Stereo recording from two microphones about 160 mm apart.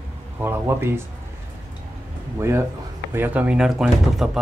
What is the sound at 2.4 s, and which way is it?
Speech, 15° right (ahead or behind).